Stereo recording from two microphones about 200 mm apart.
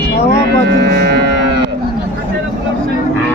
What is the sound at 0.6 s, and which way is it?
Speech, 55° right (ahead or behind).